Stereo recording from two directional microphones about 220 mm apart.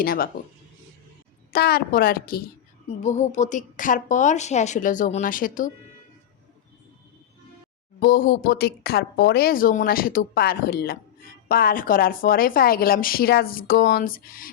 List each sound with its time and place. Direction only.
0.0 s speech: 40° left (ahead or behind)
1.5 s a woman's voice: 45° left (ahead or behind)
8.0 s speech: 40° left (ahead or behind)